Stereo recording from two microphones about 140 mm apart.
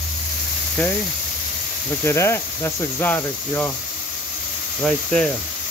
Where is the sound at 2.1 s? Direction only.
20° left (ahead or behind).